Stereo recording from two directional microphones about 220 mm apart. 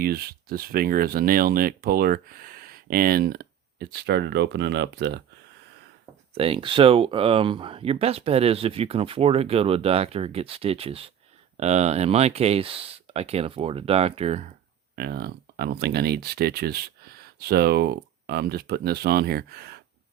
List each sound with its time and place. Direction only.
0.0 s speech: 45° right (ahead or behind)
6.3 s speech: 25° right (ahead or behind)
14.9 s speech: 45° right (ahead or behind)